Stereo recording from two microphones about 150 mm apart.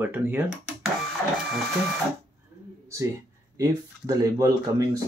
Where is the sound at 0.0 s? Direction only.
15° right (ahead or behind).